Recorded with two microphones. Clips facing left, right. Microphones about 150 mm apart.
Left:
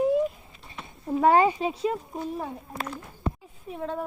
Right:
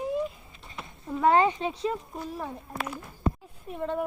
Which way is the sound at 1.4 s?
10° left (ahead or behind).